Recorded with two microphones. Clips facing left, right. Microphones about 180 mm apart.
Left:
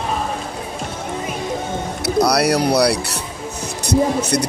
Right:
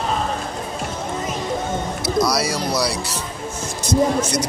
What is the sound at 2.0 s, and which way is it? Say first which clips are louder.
Speech: left 4 dB; 65° left (ahead or behind).